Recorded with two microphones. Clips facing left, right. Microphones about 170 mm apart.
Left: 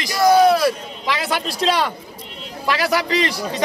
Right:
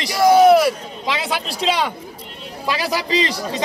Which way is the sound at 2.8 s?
65° left (ahead or behind).